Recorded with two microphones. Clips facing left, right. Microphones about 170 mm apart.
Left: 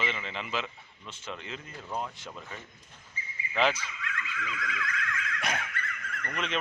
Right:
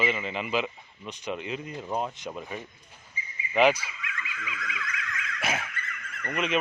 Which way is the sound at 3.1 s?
15° right (ahead or behind).